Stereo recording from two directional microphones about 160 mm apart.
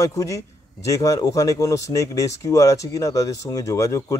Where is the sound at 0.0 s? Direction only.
20° left (ahead or behind).